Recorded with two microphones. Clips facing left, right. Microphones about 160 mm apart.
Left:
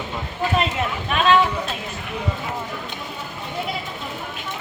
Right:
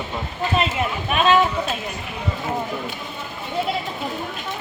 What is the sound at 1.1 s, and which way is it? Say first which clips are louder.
Speech: right 1 dB; 15° right (ahead or behind).